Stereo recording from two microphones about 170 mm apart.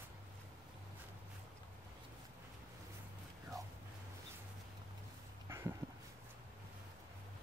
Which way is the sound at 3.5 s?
20° right (ahead or behind).